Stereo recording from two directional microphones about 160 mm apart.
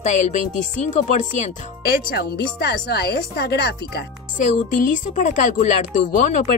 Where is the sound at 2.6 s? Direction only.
90° left.